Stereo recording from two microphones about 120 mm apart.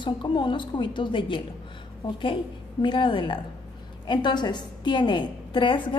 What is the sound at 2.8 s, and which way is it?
A woman's voice, 45° left (ahead or behind).